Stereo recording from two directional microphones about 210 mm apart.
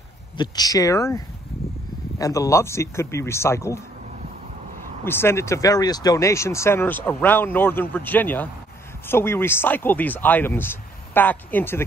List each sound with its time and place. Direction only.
0.4 s speech: 20° left (ahead or behind)
5.0 s speech: 10° left (ahead or behind)